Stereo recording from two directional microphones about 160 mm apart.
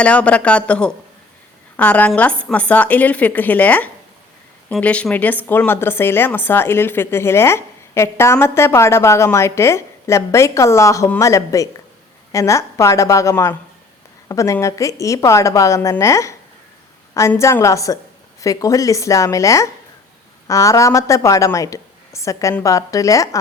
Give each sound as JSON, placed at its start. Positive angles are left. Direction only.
{"t": 0.0, "sound": "a woman's voice", "side_deg": 10}